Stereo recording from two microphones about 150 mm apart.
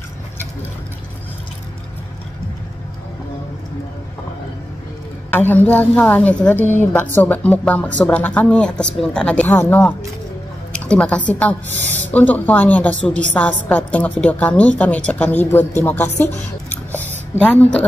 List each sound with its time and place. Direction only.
5.5 s a woman's voice: 10° left (ahead or behind)
11.8 s speech: 50° right (ahead or behind)
12.1 s a woman's voice: 10° left (ahead or behind)